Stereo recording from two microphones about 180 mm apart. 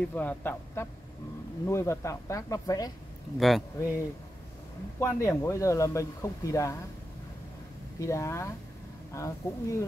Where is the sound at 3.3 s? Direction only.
Centre (ahead or behind).